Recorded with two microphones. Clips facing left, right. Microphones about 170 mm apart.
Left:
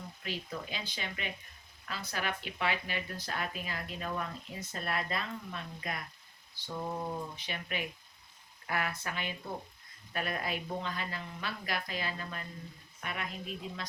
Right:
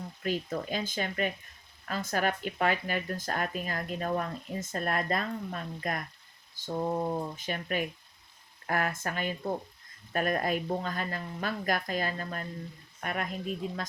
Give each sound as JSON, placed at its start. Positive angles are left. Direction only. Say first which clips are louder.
{"t": 0.2, "sound": "speech", "louder": "right 9 dB", "side_deg": -45}